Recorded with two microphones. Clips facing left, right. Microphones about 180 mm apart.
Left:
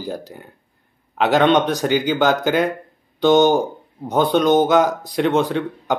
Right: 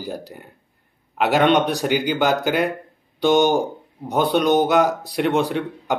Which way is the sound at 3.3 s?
20° left (ahead or behind).